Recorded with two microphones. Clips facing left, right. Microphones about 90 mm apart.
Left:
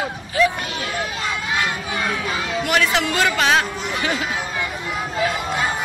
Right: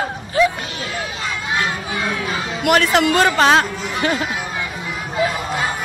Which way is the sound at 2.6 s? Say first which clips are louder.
Right 6 dB; 45° right (ahead or behind).